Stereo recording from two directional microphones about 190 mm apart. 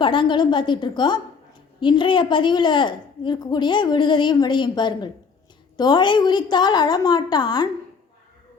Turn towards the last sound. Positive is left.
turn(degrees=20)  # may be behind; listen again after turning